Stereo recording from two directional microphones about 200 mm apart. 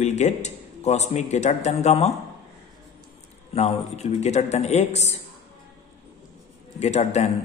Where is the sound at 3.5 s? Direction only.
30° left (ahead or behind).